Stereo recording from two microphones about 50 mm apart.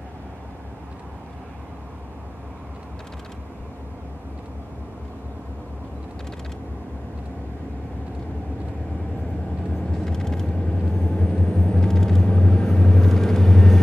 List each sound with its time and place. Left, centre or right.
9.8 s vehicle: centre